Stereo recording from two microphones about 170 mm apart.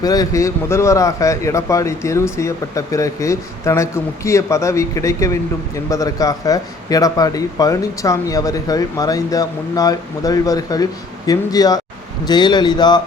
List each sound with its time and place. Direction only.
0.0 s a man's voice: 20° left (ahead or behind)